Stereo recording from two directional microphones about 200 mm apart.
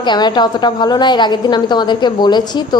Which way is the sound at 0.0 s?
20° left (ahead or behind).